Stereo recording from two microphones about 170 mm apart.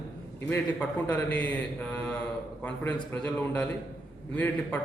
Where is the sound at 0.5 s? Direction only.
10° left (ahead or behind).